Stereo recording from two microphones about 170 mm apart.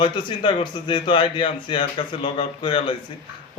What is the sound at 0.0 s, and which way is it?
A man's voice, 30° left (ahead or behind).